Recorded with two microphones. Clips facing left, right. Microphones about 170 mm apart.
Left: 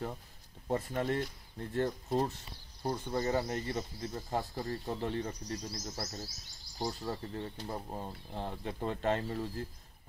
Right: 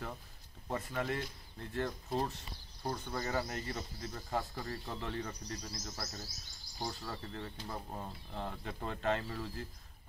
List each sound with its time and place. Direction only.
0.7 s speech: 35° left (ahead or behind)